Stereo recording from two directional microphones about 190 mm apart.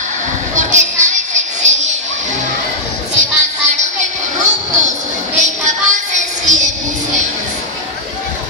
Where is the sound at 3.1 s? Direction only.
40° right (ahead or behind).